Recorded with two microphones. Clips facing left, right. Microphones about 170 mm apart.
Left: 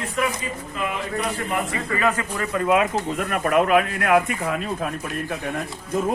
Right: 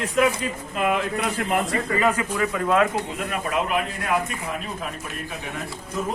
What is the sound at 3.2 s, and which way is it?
Speech, 55° left (ahead or behind).